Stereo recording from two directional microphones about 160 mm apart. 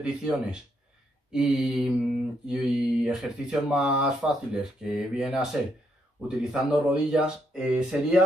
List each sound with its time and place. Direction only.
0.0 s speech: 5° right (ahead or behind)